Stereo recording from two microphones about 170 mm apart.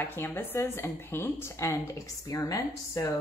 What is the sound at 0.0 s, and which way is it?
A woman's voice, 10° left (ahead or behind).